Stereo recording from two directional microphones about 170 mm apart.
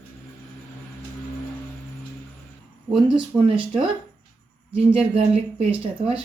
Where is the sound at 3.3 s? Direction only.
10° right (ahead or behind).